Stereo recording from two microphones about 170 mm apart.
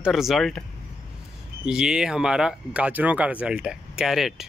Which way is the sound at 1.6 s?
5° right (ahead or behind).